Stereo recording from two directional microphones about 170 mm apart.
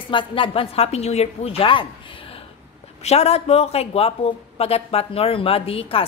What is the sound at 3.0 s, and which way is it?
Speech, 40° left (ahead or behind).